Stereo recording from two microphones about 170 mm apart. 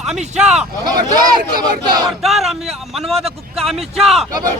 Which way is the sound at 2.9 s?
Centre (ahead or behind).